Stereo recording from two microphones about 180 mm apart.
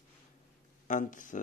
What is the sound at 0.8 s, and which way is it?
Speech, 45° left (ahead or behind).